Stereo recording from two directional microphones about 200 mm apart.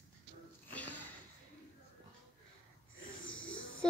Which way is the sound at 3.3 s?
75° left (ahead or behind).